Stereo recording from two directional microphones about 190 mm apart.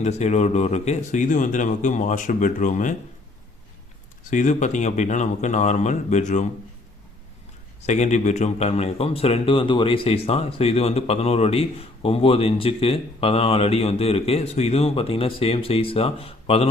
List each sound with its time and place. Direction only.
0.0 s speech: 35° left (ahead or behind)
4.3 s speech: 40° left (ahead or behind)
7.9 s speech: 40° left (ahead or behind)